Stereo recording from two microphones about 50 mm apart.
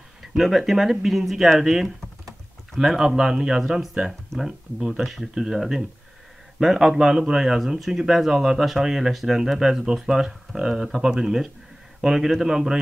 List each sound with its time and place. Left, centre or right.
0.2 s a man's voice: centre